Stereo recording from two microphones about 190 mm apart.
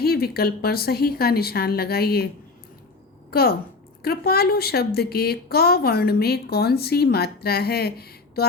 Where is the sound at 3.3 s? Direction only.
55° left (ahead or behind).